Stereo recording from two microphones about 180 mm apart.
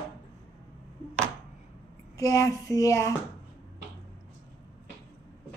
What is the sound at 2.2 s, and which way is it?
Speech, 20° left (ahead or behind).